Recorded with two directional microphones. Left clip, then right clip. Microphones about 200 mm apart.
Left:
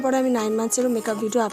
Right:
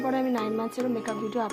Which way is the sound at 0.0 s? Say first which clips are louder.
Left 6 dB; 30° left (ahead or behind).